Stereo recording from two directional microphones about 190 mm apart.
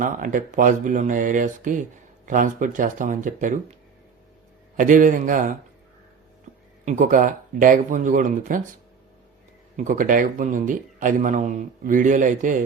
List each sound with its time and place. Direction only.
0.0 s speech: 45° right (ahead or behind)
4.8 s speech: 45° right (ahead or behind)
6.8 s speech: 40° right (ahead or behind)
9.7 s speech: 45° right (ahead or behind)